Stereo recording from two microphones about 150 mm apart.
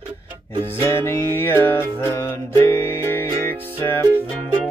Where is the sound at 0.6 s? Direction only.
15° left (ahead or behind).